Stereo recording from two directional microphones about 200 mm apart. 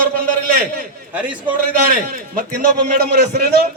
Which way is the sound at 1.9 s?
45° right (ahead or behind).